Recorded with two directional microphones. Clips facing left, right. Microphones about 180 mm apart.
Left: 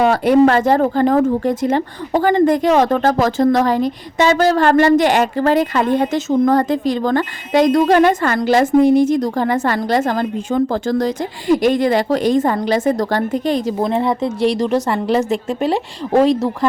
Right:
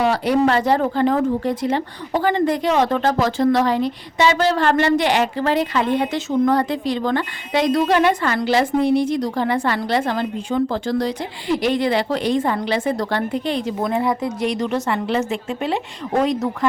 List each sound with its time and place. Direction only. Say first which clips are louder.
0.0 s speech: left 5 dB; 50° left (ahead or behind)
13.8 s a woman's voice: left 1 dB; 25° left (ahead or behind)